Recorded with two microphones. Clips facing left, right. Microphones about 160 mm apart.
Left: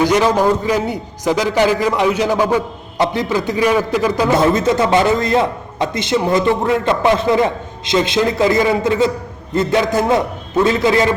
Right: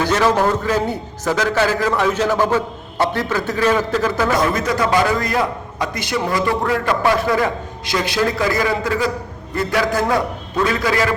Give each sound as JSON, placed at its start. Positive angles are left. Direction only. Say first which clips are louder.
{"t": 0.0, "sound": "a man's voice", "louder": "left 3 dB", "side_deg": 15}
{"t": 4.3, "sound": "a man's voice", "louder": "left 5 dB", "side_deg": 25}